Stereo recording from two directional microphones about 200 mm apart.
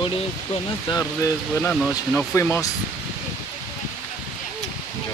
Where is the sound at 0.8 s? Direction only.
15° left (ahead or behind).